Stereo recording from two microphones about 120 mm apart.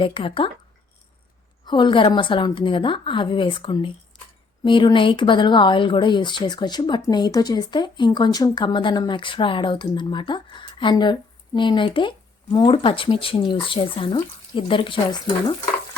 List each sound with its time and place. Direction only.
0.0 s a woman's voice: 45° left (ahead or behind)
1.6 s a woman's voice: 40° left (ahead or behind)